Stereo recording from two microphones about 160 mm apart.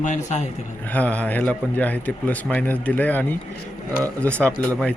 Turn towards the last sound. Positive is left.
turn(degrees=5)  # may be behind; listen again after turning